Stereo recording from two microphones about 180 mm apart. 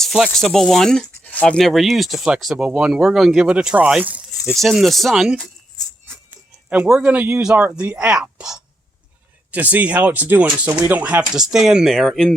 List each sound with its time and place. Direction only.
0.0 s speech: centre (ahead or behind)
6.7 s speech: 5° right (ahead or behind)